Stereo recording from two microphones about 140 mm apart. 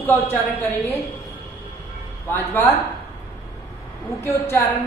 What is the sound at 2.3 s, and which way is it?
Speech, 15° left (ahead or behind).